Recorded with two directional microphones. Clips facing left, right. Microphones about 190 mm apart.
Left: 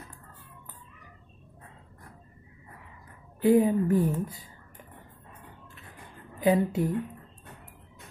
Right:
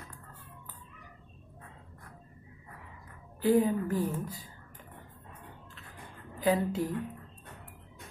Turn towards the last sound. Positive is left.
turn(degrees=25)  # may be behind; listen again after turning